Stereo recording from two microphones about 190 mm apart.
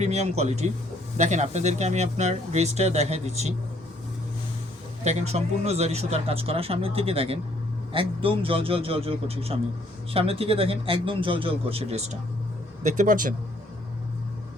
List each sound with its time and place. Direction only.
0.0 s speech: 35° right (ahead or behind)
5.0 s speech: 35° right (ahead or behind)